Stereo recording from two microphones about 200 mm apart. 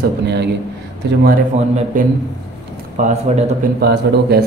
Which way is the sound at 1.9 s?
40° right (ahead or behind).